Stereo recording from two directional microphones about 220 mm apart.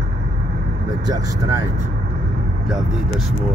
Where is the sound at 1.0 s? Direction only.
15° right (ahead or behind).